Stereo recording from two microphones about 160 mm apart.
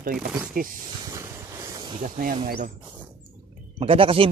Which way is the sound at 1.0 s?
20° right (ahead or behind).